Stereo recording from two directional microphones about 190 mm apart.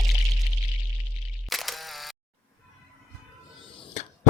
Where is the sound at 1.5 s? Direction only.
Centre (ahead or behind).